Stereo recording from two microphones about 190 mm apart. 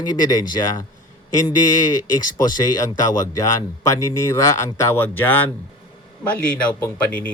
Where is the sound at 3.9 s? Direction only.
15° left (ahead or behind).